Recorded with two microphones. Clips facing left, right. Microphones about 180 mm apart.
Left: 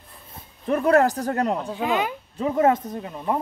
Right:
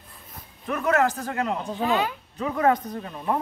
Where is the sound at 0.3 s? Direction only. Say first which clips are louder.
Left 6 dB; 35° left (ahead or behind).